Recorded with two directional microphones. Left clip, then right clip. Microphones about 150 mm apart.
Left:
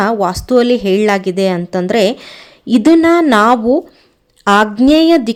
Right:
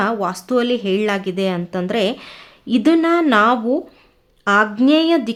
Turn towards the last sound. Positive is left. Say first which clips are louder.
# left 6 dB
turn(degrees=30)  # may be behind; listen again after turning